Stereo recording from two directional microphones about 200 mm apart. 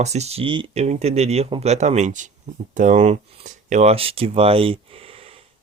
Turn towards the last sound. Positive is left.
turn(degrees=-30)  # may be behind; listen again after turning